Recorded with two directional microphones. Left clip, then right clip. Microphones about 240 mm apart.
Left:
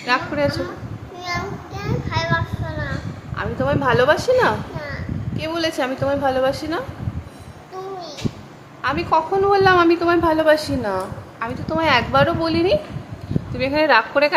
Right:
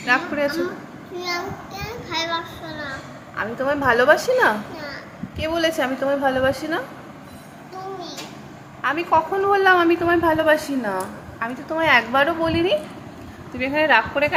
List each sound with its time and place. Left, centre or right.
0.0 s a woman's voice: centre
8.8 s a woman's voice: centre
13.6 s a woman's voice: centre